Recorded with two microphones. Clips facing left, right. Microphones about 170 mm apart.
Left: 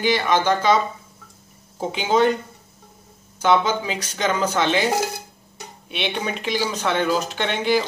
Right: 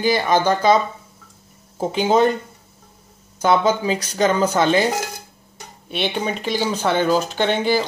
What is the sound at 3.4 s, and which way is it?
Speech, 40° right (ahead or behind).